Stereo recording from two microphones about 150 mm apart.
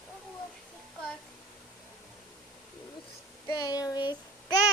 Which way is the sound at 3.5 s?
25° left (ahead or behind).